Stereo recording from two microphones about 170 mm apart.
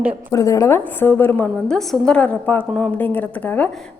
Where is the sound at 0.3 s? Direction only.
20° left (ahead or behind).